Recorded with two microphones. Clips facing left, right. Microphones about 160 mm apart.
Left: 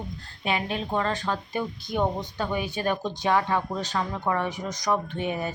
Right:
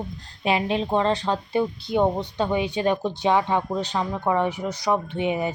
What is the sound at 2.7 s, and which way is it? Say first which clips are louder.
A woman's voice: right 4 dB; 15° right (ahead or behind).